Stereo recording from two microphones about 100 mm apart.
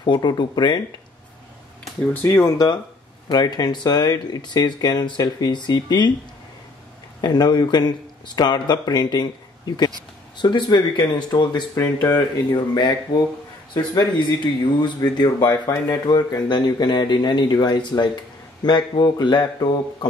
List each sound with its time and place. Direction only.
0.0 s speech: 45° left (ahead or behind)
2.2 s speech: 35° left (ahead or behind)
2.5 s speech: 45° left (ahead or behind)
7.2 s a man's voice: 45° left (ahead or behind)
12.1 s speech: 40° left (ahead or behind)